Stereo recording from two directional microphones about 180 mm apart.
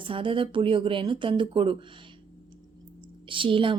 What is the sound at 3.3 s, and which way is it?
Speech, 30° right (ahead or behind).